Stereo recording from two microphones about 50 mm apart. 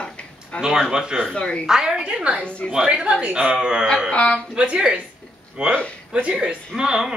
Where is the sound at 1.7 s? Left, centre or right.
Centre.